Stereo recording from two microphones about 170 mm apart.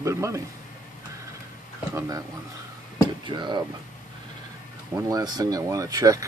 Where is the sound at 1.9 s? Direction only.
20° right (ahead or behind).